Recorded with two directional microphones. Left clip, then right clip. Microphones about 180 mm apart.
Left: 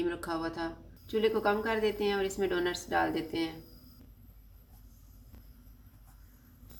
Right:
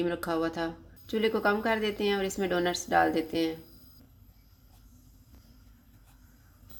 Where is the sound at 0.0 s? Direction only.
45° right (ahead or behind).